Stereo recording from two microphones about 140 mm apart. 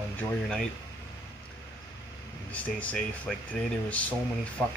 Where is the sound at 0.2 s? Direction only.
5° left (ahead or behind).